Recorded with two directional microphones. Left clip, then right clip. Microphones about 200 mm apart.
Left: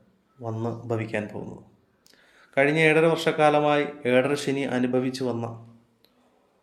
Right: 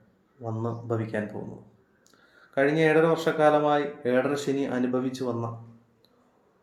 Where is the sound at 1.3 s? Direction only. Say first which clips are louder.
Left 1 dB; 15° left (ahead or behind).